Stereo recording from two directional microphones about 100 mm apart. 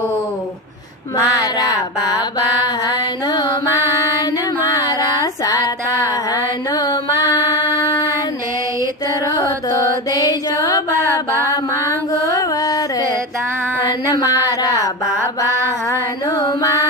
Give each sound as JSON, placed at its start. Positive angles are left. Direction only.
{"t": 1.1, "sound": "music", "side_deg": 40}
{"t": 4.7, "sound": "music", "side_deg": 35}
{"t": 6.3, "sound": "carnatic music", "side_deg": 45}
{"t": 9.2, "sound": "mantra", "side_deg": 40}
{"t": 12.2, "sound": "carnatic music", "side_deg": 35}
{"t": 14.1, "sound": "a sound", "side_deg": 35}
{"t": 15.9, "sound": "female singing", "side_deg": 35}